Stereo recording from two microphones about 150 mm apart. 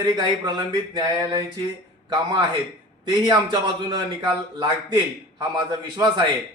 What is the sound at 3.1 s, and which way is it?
A man's voice, 30° right (ahead or behind).